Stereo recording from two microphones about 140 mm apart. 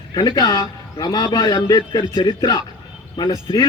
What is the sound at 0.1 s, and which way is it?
A man's voice, 30° left (ahead or behind).